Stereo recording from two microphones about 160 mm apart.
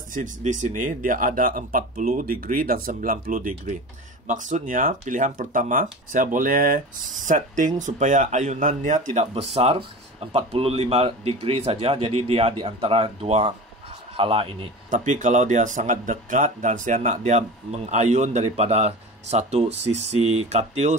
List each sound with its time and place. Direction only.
0.1 s a man's voice: 50° right (ahead or behind); by 14.7 s 35° right (ahead or behind)
14.9 s speech: 55° right (ahead or behind)